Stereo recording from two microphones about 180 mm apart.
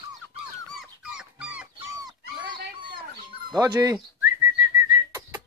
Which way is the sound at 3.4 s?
20° right (ahead or behind).